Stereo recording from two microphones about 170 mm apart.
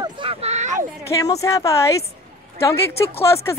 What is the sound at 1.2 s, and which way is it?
Speech, 20° left (ahead or behind).